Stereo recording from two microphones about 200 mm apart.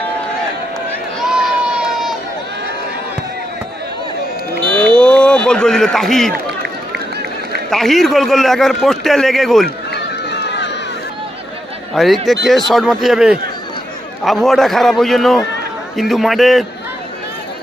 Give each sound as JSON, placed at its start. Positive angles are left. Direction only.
{"t": 1.2, "sound": "run", "side_deg": -5}
{"t": 4.9, "sound": "a sound", "side_deg": 5}
{"t": 7.7, "sound": "a man's voice", "side_deg": 0}
{"t": 9.9, "sound": "run", "side_deg": 55}
{"t": 11.9, "sound": "a man's voice", "side_deg": 0}